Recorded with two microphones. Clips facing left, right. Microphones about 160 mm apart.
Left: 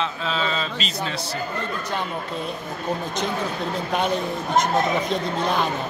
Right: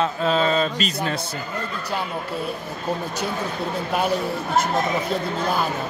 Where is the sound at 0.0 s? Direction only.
45° right (ahead or behind).